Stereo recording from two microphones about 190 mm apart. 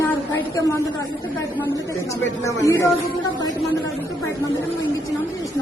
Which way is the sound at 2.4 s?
15° left (ahead or behind).